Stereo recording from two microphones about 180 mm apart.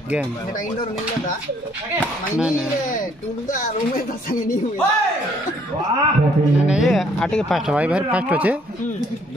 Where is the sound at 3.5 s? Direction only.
50° left (ahead or behind).